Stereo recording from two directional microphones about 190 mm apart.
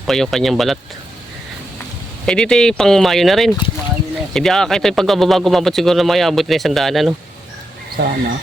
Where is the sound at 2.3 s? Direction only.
5° left (ahead or behind).